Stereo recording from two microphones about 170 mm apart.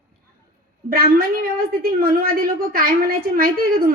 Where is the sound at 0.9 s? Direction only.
60° right (ahead or behind).